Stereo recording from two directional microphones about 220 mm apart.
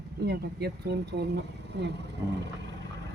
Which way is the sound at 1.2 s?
50° right (ahead or behind).